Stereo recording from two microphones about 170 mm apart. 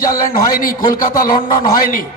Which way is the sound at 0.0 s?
55° left (ahead or behind).